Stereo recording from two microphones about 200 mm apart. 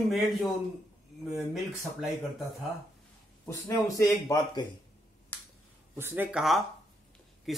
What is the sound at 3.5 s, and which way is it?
Speech, 15° left (ahead or behind).